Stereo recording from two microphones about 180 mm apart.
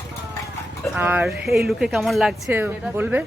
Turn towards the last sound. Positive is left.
turn(degrees=-10)  # may be behind; listen again after turning